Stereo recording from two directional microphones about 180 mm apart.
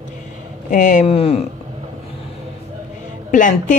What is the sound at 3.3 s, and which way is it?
Speech, 45° left (ahead or behind).